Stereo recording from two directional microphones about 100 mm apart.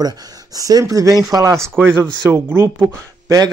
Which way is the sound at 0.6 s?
35° right (ahead or behind).